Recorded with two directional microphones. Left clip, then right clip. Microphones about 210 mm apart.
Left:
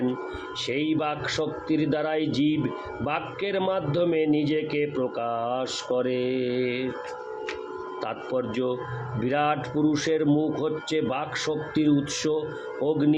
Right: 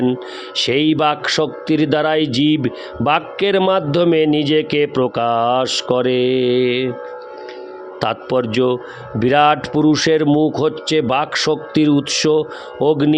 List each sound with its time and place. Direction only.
0.0 s speech: 45° right (ahead or behind)
8.0 s speech: 50° right (ahead or behind)